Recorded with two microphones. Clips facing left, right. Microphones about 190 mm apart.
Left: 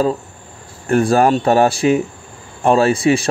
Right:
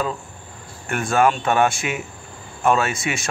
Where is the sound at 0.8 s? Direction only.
35° left (ahead or behind).